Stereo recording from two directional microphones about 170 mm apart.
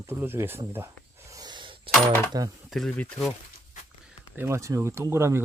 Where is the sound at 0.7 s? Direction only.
15° right (ahead or behind).